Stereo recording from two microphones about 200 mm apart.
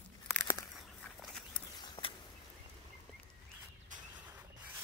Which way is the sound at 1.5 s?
25° left (ahead or behind).